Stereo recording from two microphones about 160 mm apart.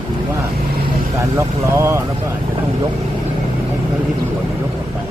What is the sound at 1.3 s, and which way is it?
Vehicle, 15° right (ahead or behind).